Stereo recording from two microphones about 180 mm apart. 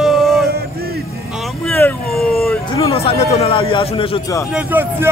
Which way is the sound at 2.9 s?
30° left (ahead or behind).